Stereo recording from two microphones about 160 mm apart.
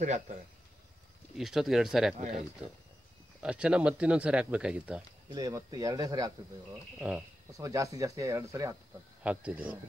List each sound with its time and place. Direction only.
1.4 s speech: centre (ahead or behind)
3.4 s speech: 5° right (ahead or behind)
5.3 s speech: 25° right (ahead or behind)
7.0 s speech: 10° right (ahead or behind)
7.5 s speech: 20° right (ahead or behind)
9.2 s speech: 5° right (ahead or behind)